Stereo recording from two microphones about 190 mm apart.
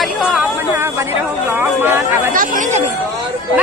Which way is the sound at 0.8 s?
15° right (ahead or behind).